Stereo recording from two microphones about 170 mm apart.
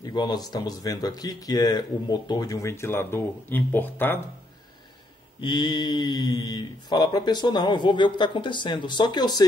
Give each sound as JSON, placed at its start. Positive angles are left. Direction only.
{"t": 0.0, "sound": "speech", "side_deg": 25}
{"t": 5.4, "sound": "speech", "side_deg": 25}